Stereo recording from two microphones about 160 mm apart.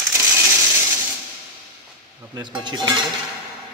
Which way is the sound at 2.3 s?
30° right (ahead or behind).